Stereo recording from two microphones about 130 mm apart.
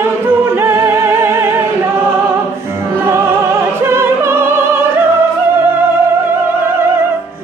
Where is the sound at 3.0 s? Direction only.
20° right (ahead or behind).